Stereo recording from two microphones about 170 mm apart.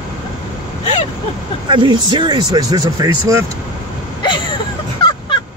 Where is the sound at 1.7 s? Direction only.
30° right (ahead or behind).